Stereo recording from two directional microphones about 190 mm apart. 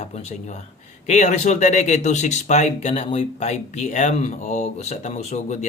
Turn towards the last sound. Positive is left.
turn(degrees=35)  # may be behind; listen again after turning